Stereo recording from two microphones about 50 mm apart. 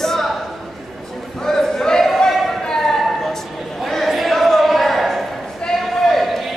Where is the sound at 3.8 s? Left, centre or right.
Centre.